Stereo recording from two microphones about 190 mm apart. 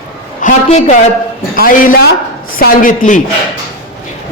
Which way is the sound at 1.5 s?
50° left (ahead or behind).